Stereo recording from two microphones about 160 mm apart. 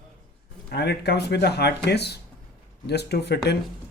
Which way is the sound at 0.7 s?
90° left.